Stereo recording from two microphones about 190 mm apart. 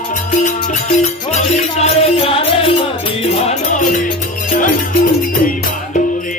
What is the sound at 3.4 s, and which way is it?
Music, 40° left (ahead or behind).